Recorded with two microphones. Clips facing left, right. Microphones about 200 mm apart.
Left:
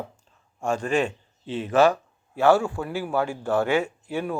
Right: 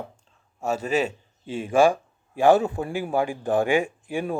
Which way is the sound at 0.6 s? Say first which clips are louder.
Even; 5° right (ahead or behind).